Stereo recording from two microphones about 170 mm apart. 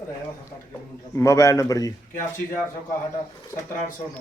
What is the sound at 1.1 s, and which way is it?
Speech, 20° left (ahead or behind).